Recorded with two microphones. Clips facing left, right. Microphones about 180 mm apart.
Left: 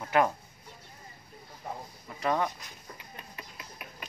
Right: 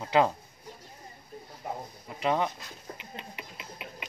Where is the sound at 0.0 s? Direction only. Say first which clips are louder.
Right 2 dB; 25° right (ahead or behind).